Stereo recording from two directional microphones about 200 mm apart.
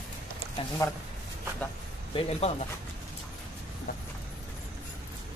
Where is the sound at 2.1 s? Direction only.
30° left (ahead or behind).